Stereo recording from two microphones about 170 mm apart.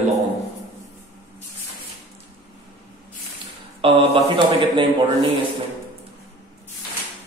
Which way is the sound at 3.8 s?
30° right (ahead or behind).